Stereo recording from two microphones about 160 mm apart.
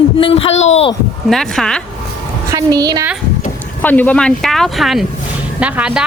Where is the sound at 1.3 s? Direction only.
5° left (ahead or behind).